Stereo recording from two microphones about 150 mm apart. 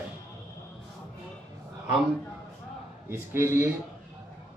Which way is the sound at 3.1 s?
15° right (ahead or behind).